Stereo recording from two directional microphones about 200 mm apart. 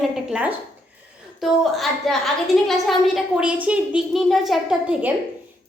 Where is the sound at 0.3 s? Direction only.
5° right (ahead or behind).